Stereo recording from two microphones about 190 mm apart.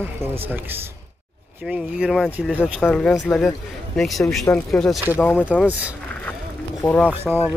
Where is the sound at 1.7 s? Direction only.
5° right (ahead or behind).